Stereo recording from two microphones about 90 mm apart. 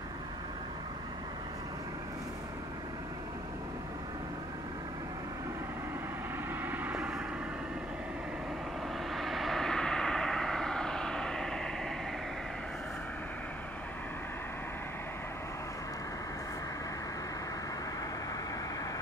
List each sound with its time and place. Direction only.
6.6 s vehicle: 20° right (ahead or behind)
9.1 s vehicle: centre (ahead or behind)